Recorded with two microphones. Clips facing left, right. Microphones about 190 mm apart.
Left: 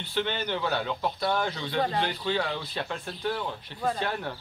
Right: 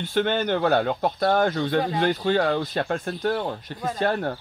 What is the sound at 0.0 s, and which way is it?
Speech, 50° right (ahead or behind).